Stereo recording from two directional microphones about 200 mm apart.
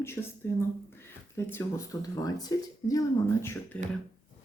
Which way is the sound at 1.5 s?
15° left (ahead or behind).